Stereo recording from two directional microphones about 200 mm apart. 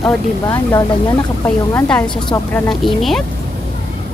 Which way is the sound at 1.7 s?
5° left (ahead or behind).